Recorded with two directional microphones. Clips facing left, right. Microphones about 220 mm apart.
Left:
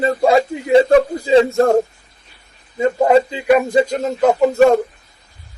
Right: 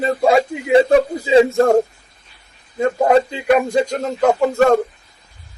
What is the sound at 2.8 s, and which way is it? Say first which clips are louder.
Speech: left 1 dB; 10° left (ahead or behind).